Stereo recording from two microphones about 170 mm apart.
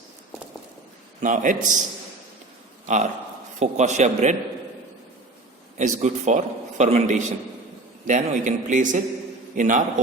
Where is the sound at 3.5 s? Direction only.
45° right (ahead or behind).